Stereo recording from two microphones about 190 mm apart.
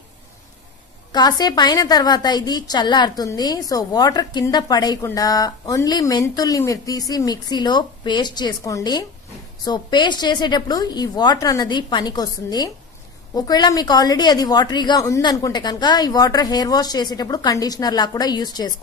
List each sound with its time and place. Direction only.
1.1 s a woman's voice: 20° left (ahead or behind)